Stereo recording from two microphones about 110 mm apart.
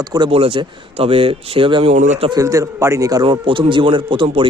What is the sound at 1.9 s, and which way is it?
Speech, 90° right.